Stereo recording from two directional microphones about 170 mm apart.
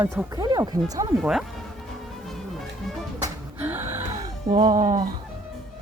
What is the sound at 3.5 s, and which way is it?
Gasp, 10° right (ahead or behind).